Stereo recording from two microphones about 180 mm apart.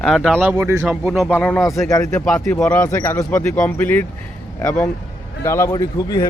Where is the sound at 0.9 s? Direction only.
Centre (ahead or behind); by 1.8 s 15° left (ahead or behind).